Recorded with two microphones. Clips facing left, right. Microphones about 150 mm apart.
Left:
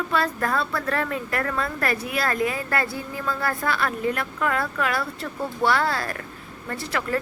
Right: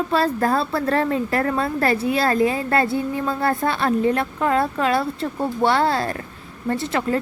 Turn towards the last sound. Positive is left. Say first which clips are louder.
# right 5 dB
turn(degrees=-25)  # may be behind; listen again after turning